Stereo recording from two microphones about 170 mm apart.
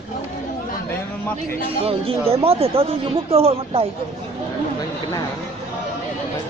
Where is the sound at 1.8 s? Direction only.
35° right (ahead or behind).